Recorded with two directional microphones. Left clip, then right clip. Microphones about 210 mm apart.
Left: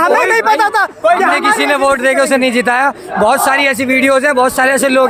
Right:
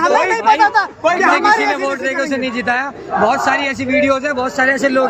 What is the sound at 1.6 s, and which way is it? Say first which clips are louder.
A man's voice: left 6 dB; 55° left (ahead or behind).